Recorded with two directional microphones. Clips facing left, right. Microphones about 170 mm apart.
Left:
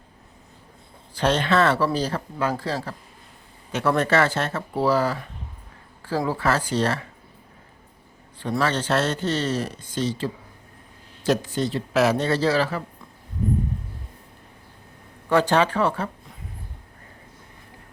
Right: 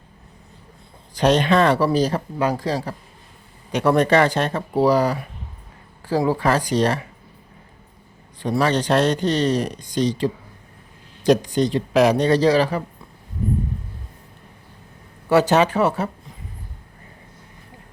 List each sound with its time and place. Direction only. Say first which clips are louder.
1.2 s speech: right 4 dB; 15° right (ahead or behind)
8.4 s speech: right 4 dB; 15° right (ahead or behind)
15.3 s speech: right 3 dB; 10° right (ahead or behind)